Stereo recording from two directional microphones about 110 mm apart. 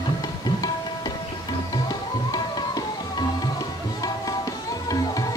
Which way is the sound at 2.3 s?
40° left (ahead or behind).